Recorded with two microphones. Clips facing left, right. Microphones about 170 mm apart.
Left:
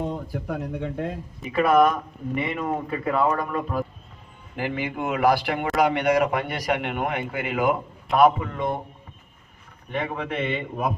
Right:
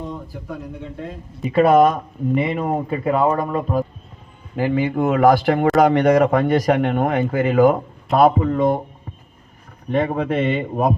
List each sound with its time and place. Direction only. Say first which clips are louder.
0.5 s speech: left 2 dB; 60° left (ahead or behind)
1.5 s speech: right 5 dB; 30° right (ahead or behind)
9.9 s speech: right 9 dB; 35° right (ahead or behind)